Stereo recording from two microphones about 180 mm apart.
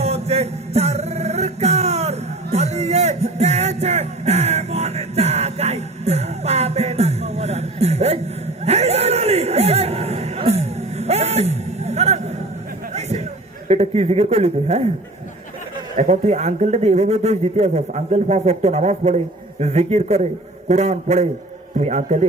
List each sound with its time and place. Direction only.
0.0 s a sound: 35° right (ahead or behind)
13.7 s a man's voice: 35° right (ahead or behind)
16.0 s a man's voice: 40° right (ahead or behind)